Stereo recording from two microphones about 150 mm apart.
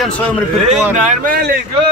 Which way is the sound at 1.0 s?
70° right (ahead or behind).